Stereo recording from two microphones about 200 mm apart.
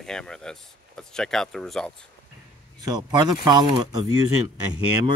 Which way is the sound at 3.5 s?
20° right (ahead or behind).